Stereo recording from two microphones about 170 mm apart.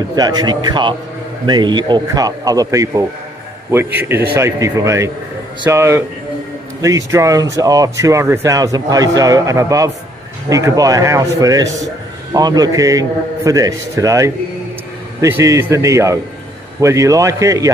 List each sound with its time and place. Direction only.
0.1 s a man's voice: 25° right (ahead or behind)